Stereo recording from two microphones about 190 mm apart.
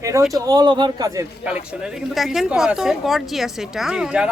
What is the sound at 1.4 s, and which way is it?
Speech, 5° right (ahead or behind).